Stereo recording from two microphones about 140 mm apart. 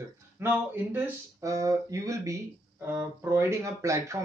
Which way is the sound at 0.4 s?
15° right (ahead or behind).